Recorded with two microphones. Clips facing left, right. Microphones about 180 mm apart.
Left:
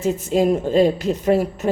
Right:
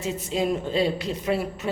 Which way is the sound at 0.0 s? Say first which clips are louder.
Left 8 dB; 45° left (ahead or behind).